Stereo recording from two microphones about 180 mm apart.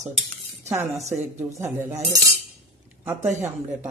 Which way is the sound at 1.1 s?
15° right (ahead or behind).